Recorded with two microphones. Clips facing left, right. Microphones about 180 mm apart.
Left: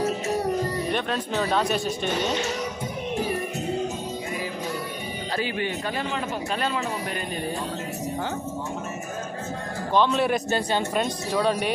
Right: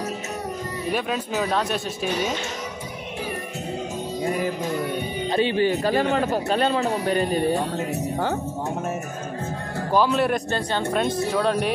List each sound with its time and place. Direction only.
0.9 s speech: 5° right (ahead or behind)
5.3 s speech: 25° right (ahead or behind)
6.0 s speech: 60° right (ahead or behind)
6.3 s speech: 35° right (ahead or behind)
9.9 s speech: centre (ahead or behind)
10.5 s speech: 10° left (ahead or behind)
11.1 s speech: centre (ahead or behind)